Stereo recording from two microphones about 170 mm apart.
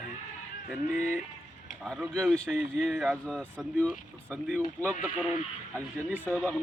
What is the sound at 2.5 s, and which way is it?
Speech, 10° right (ahead or behind).